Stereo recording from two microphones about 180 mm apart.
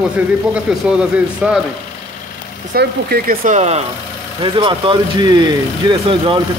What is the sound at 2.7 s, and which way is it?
Speech, 55° right (ahead or behind).